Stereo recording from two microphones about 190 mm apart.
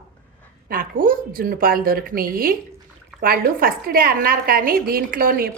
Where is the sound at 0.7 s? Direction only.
50° right (ahead or behind).